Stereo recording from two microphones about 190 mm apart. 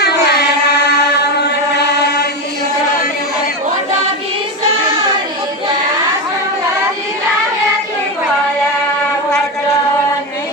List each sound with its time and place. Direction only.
0.0 s singing: 60° left (ahead or behind)
1.1 s chant: 60° left (ahead or behind)